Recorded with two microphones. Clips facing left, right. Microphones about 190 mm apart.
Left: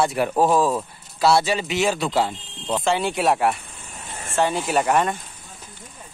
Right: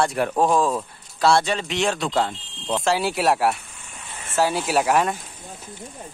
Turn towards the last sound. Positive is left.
turn(degrees=0)  # may be behind; listen again after turning